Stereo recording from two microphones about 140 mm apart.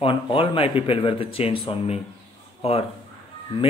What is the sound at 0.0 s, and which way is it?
A man's voice, 40° left (ahead or behind).